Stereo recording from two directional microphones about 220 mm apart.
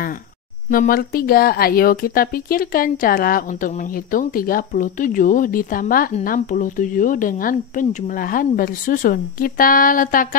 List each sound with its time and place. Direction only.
0.7 s a woman's voice: 40° left (ahead or behind)